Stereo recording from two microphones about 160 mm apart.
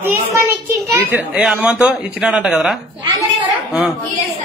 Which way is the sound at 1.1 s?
5° right (ahead or behind).